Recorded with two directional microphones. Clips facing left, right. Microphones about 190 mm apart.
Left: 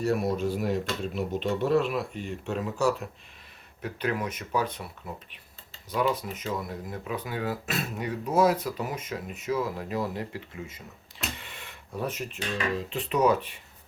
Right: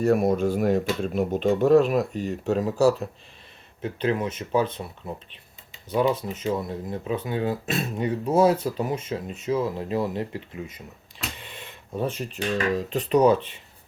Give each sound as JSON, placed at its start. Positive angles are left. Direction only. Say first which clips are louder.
{"t": 0.0, "sound": "speech", "louder": "right 6 dB", "side_deg": -50}
{"t": 11.3, "sound": "a sound", "louder": "right 3 dB", "side_deg": -20}
{"t": 12.9, "sound": "speech", "louder": "right 5 dB", "side_deg": -40}